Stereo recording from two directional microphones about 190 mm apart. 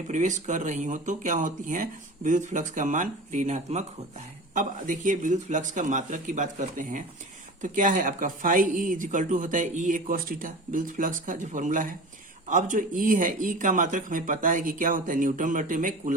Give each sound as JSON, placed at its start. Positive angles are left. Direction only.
{"t": 0.1, "sound": "speech", "side_deg": -40}